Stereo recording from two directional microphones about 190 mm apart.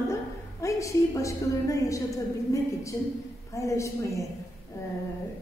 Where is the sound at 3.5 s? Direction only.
15° left (ahead or behind).